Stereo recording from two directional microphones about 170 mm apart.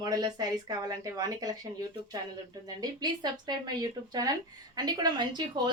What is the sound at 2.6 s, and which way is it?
A woman's voice, 25° right (ahead or behind).